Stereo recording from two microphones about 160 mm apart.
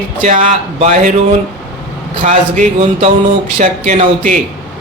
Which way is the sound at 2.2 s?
50° right (ahead or behind).